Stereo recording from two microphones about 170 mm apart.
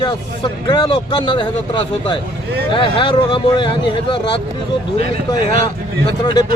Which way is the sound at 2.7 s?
30° left (ahead or behind).